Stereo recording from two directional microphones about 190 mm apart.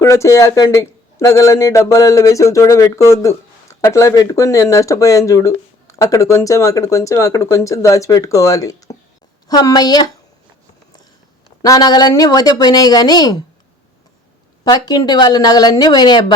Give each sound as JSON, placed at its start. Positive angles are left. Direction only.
{"t": 0.0, "sound": "a man's voice", "side_deg": 15}
{"t": 11.6, "sound": "a woman's voice", "side_deg": 20}
{"t": 14.6, "sound": "a woman's voice", "side_deg": 20}